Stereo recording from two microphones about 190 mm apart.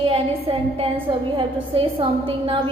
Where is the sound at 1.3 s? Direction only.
30° right (ahead or behind).